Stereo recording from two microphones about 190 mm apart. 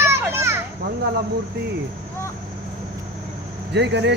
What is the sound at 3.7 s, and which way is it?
Speech, 65° right (ahead or behind).